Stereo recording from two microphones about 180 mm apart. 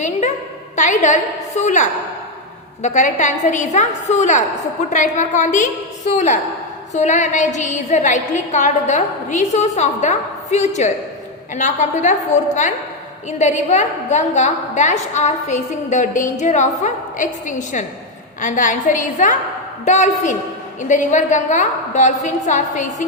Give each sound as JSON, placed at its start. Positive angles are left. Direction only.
{"t": 0.0, "sound": "a sound", "side_deg": 40}
{"t": 0.8, "sound": "a woman's voice", "side_deg": 45}
{"t": 13.4, "sound": "a woman's voice", "side_deg": 40}